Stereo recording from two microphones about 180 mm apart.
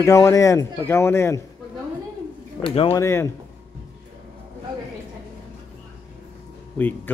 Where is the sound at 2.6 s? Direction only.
30° left (ahead or behind).